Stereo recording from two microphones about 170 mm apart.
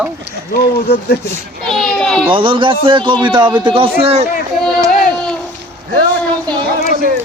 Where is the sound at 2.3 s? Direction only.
30° right (ahead or behind).